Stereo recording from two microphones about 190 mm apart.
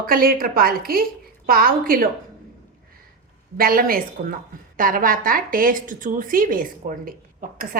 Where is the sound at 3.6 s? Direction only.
50° right (ahead or behind).